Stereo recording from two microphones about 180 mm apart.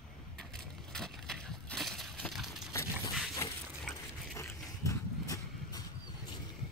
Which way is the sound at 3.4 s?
15° left (ahead or behind).